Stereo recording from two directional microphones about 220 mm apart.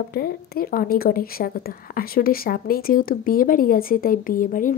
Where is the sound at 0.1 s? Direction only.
45° left (ahead or behind).